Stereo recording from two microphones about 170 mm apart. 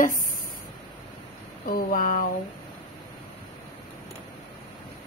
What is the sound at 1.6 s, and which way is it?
Speech, 55° left (ahead or behind).